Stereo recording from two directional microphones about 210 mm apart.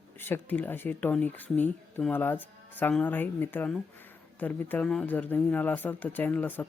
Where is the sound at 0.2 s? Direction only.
10° left (ahead or behind).